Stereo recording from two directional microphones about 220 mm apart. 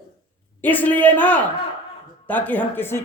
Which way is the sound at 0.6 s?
10° left (ahead or behind).